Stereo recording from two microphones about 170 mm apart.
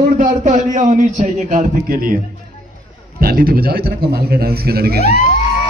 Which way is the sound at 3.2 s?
60° right (ahead or behind).